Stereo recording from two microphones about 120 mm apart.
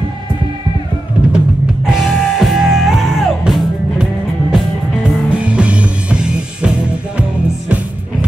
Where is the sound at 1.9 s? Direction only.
Centre (ahead or behind).